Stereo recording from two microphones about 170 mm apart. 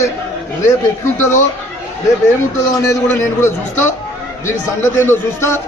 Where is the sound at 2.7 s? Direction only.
20° left (ahead or behind).